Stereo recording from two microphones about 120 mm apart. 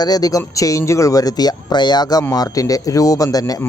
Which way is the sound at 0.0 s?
30° left (ahead or behind).